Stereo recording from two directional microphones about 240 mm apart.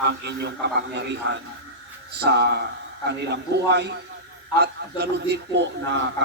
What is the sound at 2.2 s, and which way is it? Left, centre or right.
A man's voice, right.